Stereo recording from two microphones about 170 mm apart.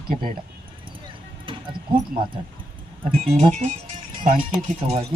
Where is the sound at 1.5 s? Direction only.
30° right (ahead or behind).